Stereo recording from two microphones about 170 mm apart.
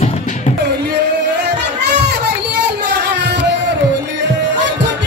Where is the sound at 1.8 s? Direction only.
75° right (ahead or behind).